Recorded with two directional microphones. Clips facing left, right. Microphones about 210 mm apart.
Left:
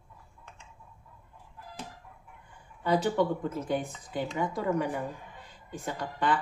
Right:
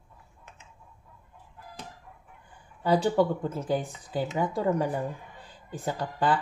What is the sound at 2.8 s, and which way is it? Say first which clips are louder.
Speech: right 3 dB; 30° right (ahead or behind).